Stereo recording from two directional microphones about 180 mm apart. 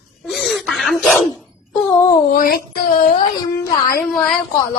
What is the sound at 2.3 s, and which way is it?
Speech, 50° left (ahead or behind).